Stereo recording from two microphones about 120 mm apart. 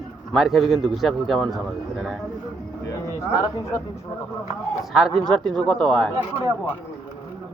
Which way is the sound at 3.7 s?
25° left (ahead or behind).